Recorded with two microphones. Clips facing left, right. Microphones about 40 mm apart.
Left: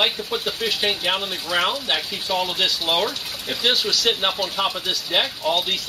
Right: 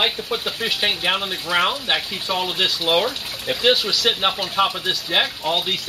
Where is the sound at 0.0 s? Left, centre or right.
Centre.